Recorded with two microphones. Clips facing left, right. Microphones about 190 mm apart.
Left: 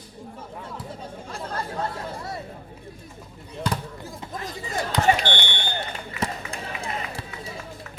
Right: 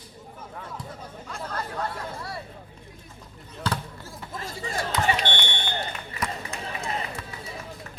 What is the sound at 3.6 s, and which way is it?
Basketball bounce, 20° left (ahead or behind).